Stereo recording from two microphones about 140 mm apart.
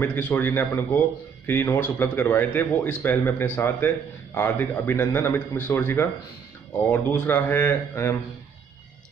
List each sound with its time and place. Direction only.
0.0 s a man's voice: 10° left (ahead or behind)